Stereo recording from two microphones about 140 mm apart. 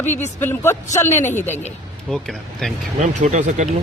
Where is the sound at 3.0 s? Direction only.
60° right (ahead or behind).